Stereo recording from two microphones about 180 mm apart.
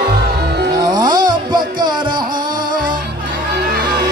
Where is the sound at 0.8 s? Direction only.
25° right (ahead or behind).